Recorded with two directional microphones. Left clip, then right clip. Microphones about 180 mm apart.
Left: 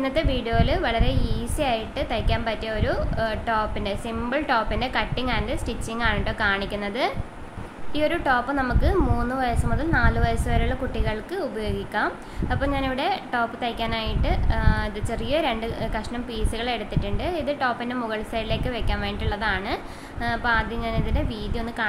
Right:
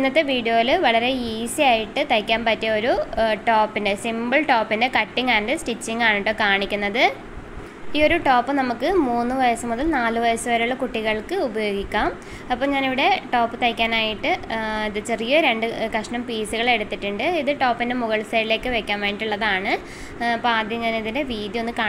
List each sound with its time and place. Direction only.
0.0 s a woman's voice: 15° right (ahead or behind)